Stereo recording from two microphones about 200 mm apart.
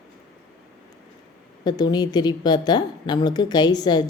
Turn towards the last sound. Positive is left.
turn(degrees=20)  # may be behind; listen again after turning